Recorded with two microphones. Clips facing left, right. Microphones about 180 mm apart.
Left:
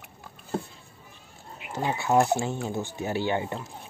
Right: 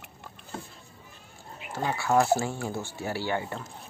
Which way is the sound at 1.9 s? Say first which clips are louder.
Left 1 dB; 20° left (ahead or behind).